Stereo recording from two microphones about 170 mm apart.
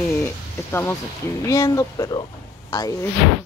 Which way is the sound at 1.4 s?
20° left (ahead or behind).